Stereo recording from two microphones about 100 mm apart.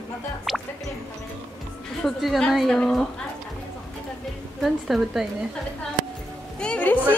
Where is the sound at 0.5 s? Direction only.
Centre (ahead or behind).